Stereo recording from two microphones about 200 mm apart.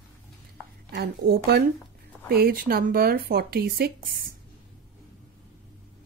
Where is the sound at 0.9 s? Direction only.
50° right (ahead or behind).